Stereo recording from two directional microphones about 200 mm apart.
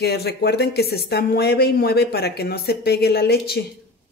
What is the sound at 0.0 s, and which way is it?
Speech, 55° left (ahead or behind).